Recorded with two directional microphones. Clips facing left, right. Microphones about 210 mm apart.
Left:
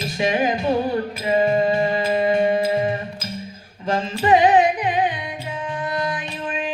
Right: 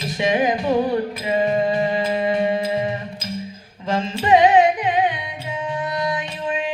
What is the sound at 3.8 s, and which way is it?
Carnatic music, 25° right (ahead or behind).